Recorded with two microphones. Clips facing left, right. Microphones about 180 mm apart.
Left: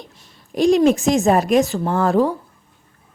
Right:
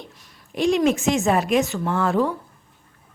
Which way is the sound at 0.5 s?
40° left (ahead or behind).